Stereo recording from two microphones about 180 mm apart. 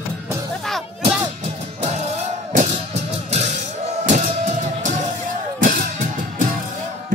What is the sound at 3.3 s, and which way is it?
Music, 40° right (ahead or behind).